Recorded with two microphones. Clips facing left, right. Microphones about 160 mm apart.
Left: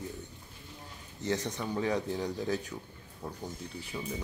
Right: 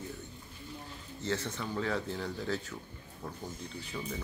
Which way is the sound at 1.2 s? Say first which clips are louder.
Left 2 dB; 15° left (ahead or behind).